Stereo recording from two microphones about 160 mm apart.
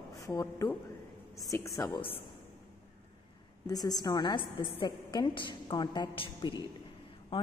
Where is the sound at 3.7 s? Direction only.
25° left (ahead or behind).